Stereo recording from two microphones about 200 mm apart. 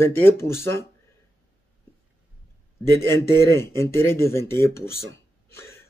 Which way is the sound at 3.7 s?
10° left (ahead or behind).